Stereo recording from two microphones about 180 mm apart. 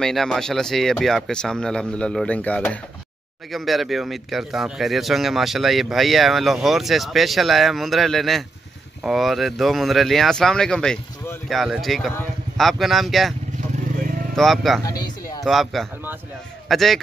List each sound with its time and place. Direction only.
0.0 s speech: centre (ahead or behind)
14.3 s speech: centre (ahead or behind)
14.9 s a sound: 20° left (ahead or behind)
15.4 s a man's voice: centre (ahead or behind)